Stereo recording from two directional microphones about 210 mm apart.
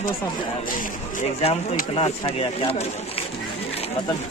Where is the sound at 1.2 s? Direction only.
35° left (ahead or behind).